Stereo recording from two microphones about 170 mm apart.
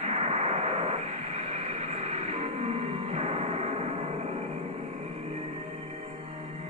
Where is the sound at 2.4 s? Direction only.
40° right (ahead or behind).